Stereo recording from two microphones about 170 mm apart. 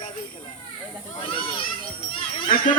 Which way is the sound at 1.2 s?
30° left (ahead or behind).